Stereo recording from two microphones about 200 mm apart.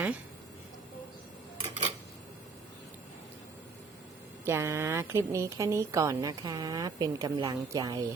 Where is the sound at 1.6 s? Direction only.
35° right (ahead or behind).